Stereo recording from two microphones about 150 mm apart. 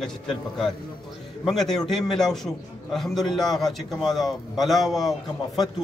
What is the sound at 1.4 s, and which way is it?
A man's voice, centre (ahead or behind).